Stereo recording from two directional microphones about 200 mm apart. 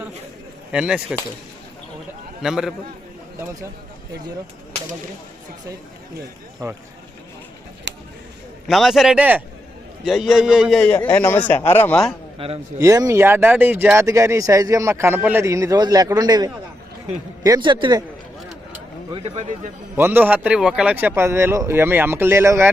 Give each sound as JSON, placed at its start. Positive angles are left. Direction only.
{"t": 0.7, "sound": "a man's voice", "side_deg": -5}
{"t": 2.4, "sound": "a man's voice", "side_deg": 0}
{"t": 3.3, "sound": "speech", "side_deg": -15}
{"t": 7.9, "sound": "a sound", "side_deg": -60}
{"t": 8.6, "sound": "a man's voice", "side_deg": 0}
{"t": 12.4, "sound": "a man's voice", "side_deg": -30}
{"t": 12.8, "sound": "a man's voice", "side_deg": -15}
{"t": 19.1, "sound": "speech", "side_deg": -35}
{"t": 20.0, "sound": "speech", "side_deg": -10}